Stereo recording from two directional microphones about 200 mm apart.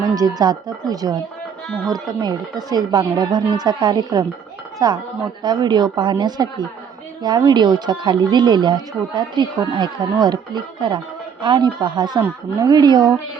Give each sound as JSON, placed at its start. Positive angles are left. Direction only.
{"t": 0.1, "sound": "speech", "side_deg": -20}